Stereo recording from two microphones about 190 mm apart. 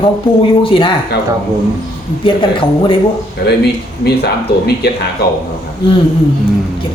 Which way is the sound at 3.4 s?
60° left (ahead or behind).